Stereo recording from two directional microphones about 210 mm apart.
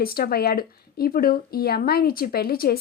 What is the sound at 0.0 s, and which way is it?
A woman's voice, 45° left (ahead or behind).